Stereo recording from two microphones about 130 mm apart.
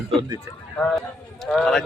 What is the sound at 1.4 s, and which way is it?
Speech, 5° left (ahead or behind).